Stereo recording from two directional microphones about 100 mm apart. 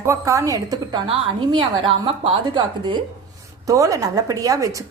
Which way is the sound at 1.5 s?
55° right (ahead or behind).